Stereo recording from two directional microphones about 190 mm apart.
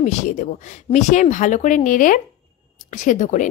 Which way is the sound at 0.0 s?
40° left (ahead or behind).